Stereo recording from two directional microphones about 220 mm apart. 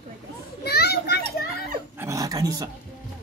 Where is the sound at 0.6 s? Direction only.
45° left (ahead or behind).